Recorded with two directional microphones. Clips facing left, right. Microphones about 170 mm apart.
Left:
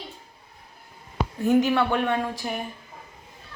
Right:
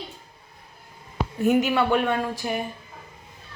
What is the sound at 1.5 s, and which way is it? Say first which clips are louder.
Speech: left 2 dB; 10° right (ahead or behind).